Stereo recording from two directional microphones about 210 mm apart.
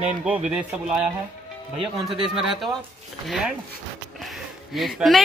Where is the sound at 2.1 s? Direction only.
25° right (ahead or behind).